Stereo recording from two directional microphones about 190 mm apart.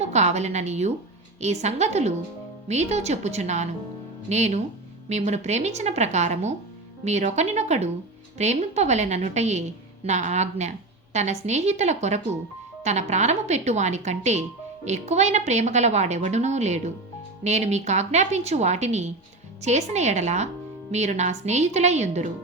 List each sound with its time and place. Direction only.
0.0 s a woman's voice: 35° right (ahead or behind)